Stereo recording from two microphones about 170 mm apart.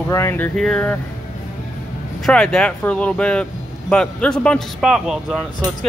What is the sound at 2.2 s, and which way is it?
A man's voice, 5° left (ahead or behind).